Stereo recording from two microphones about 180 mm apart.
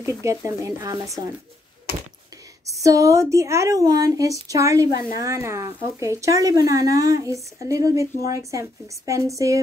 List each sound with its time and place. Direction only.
0.2 s a woman's voice: 15° right (ahead or behind)
2.6 s a woman's voice: 20° right (ahead or behind)